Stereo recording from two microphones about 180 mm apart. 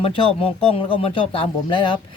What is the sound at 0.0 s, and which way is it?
Speech, 30° left (ahead or behind).